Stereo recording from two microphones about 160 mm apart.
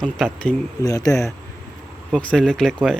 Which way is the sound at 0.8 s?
20° left (ahead or behind).